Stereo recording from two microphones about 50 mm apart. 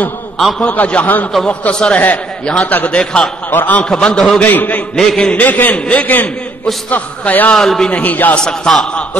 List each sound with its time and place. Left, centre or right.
0.7 s a man's voice: left
1.5 s a man's voice: left
3.4 s a man's voice: left
3.9 s a man's voice: centre
4.4 s a man's voice: left
4.9 s a man's voice: centre
5.3 s a man's voice: left
7.5 s a man's voice: centre
7.9 s a man's voice: left
8.4 s a man's voice: centre